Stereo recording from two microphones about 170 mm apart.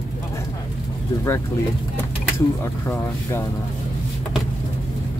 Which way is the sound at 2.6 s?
15° left (ahead or behind).